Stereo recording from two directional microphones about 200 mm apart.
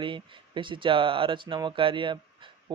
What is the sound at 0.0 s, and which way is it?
Speech, 25° right (ahead or behind).